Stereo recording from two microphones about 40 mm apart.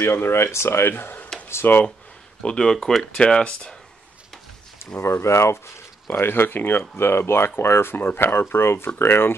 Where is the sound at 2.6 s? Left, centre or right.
Centre.